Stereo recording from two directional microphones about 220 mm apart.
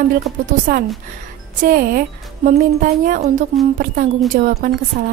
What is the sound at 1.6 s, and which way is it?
A woman's voice, 40° right (ahead or behind).